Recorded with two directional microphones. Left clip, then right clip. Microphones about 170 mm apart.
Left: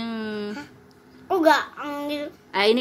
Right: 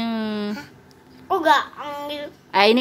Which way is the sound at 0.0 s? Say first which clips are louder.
Right 4 dB; 15° right (ahead or behind).